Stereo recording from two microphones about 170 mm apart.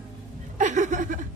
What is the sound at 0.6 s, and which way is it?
Chuckle, 45° right (ahead or behind).